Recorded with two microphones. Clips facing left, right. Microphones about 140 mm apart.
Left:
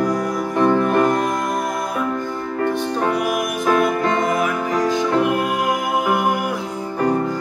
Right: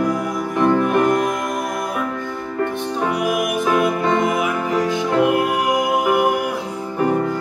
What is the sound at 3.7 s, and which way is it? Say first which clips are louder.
Music: left 1 dB; 10° right (ahead or behind).